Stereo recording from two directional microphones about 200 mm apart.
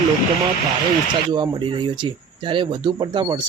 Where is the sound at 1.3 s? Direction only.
25° right (ahead or behind).